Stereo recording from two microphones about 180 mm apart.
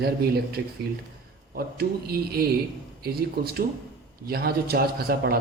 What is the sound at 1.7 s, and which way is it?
A woman's voice, 60° right (ahead or behind).